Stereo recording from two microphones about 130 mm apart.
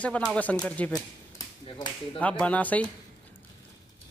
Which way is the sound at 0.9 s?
30° left (ahead or behind).